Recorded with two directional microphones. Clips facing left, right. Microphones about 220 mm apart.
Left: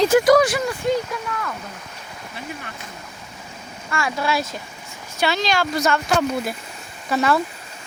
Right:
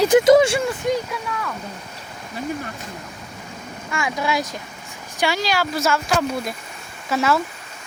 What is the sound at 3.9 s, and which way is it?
Speech, 15° right (ahead or behind).